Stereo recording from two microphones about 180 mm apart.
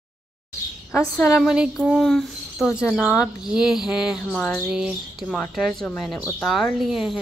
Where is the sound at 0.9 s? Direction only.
Centre (ahead or behind).